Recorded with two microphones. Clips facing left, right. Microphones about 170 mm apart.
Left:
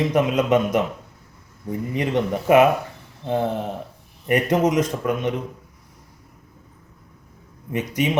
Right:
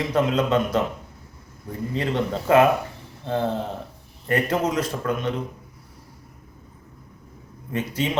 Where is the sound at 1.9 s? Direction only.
15° left (ahead or behind).